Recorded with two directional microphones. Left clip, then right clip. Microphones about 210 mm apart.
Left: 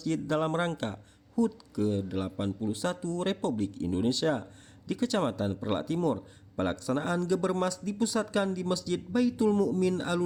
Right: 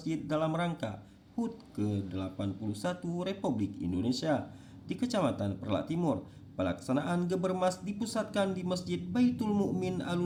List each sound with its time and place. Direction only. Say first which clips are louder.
0.0 s speech: left 3 dB; 50° left (ahead or behind)